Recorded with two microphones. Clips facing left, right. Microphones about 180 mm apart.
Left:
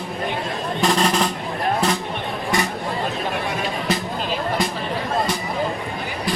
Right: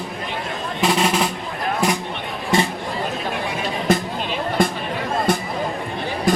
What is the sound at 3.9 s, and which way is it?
Music, 50° right (ahead or behind).